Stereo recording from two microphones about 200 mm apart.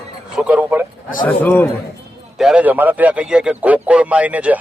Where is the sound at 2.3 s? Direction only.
5° right (ahead or behind).